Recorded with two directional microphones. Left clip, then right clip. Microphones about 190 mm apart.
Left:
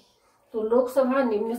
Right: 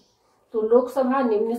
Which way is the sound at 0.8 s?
20° right (ahead or behind).